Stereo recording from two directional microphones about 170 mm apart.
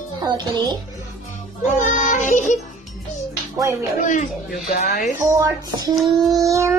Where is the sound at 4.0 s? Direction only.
45° left (ahead or behind).